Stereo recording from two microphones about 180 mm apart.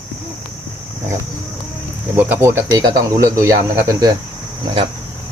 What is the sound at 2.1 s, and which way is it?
Speech, 10° right (ahead or behind).